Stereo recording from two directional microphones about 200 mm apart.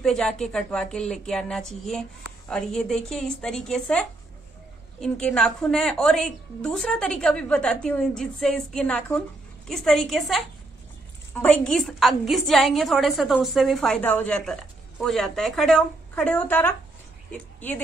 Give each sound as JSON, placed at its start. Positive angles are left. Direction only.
{"t": 0.0, "sound": "a woman's voice", "side_deg": 0}
{"t": 5.0, "sound": "a woman's voice", "side_deg": 5}